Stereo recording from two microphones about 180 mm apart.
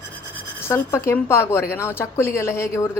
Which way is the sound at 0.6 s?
15° left (ahead or behind).